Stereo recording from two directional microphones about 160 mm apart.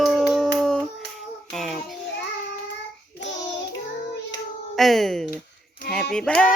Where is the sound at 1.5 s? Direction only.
Centre (ahead or behind).